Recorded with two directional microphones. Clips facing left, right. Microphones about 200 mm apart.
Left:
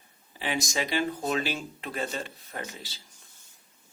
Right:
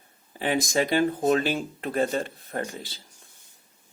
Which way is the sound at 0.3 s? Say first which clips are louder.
Right 6 dB; 50° right (ahead or behind).